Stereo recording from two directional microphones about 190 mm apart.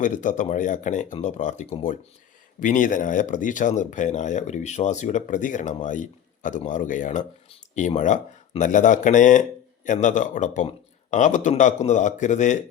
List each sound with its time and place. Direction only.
0.0 s speech: 40° left (ahead or behind)